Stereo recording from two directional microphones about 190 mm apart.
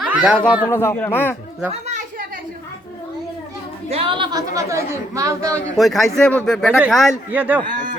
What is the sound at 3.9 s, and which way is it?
A woman's voice, 30° right (ahead or behind).